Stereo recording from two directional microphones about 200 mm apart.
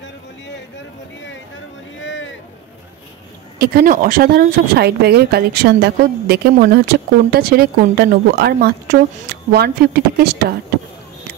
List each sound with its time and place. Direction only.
2.0 s boat: 70° left (ahead or behind)
3.5 s speech: 50° right (ahead or behind)